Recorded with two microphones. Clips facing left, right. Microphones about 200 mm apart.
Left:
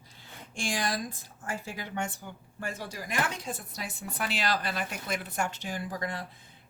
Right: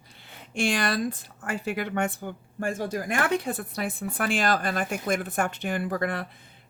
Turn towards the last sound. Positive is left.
turn(degrees=-60)  # may be behind; listen again after turning